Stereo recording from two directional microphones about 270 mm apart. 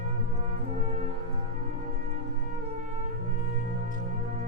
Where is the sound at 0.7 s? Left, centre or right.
Right.